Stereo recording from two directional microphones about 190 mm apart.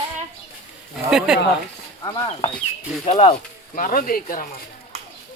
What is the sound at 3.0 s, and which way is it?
Speech, 30° left (ahead or behind).